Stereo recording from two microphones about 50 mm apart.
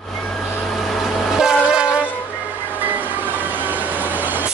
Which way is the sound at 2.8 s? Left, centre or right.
Right.